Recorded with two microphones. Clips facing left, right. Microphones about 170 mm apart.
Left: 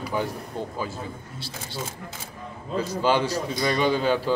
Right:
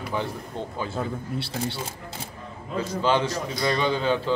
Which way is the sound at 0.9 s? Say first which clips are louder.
Right 7 dB; 65° right (ahead or behind).